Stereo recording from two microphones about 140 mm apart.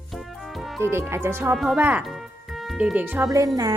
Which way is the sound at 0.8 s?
15° right (ahead or behind).